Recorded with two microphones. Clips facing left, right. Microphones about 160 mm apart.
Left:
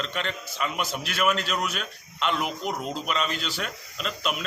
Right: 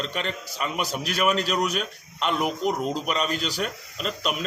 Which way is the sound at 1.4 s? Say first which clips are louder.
Right 4 dB; 40° right (ahead or behind).